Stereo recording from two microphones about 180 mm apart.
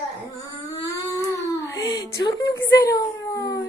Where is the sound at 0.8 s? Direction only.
20° left (ahead or behind).